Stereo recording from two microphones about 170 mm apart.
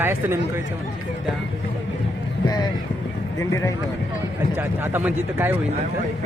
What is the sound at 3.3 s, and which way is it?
Speech, 20° left (ahead or behind).